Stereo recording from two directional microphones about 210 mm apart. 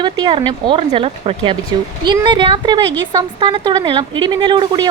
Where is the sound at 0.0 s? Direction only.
20° right (ahead or behind).